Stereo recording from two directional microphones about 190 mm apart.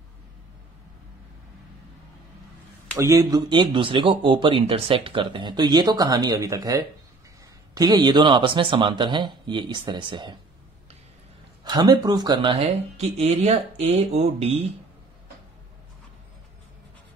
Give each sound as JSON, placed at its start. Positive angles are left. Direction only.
{"t": 3.0, "sound": "speech", "side_deg": -20}
{"t": 11.6, "sound": "speech", "side_deg": -20}